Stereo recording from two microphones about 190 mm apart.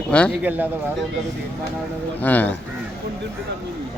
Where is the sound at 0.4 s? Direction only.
10° right (ahead or behind).